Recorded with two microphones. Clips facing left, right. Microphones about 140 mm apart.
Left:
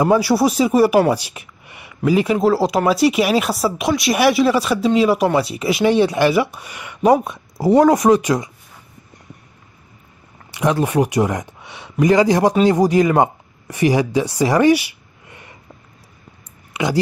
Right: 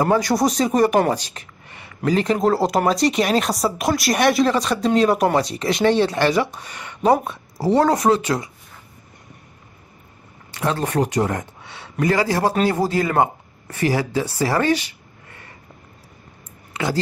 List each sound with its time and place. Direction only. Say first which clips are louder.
0.0 s speech: left 3 dB; 10° left (ahead or behind)
10.5 s speech: left 4 dB; 15° left (ahead or behind)
16.7 s speech: left 4 dB; 15° left (ahead or behind)